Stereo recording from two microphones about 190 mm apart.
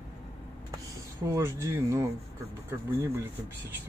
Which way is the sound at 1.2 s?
15° right (ahead or behind).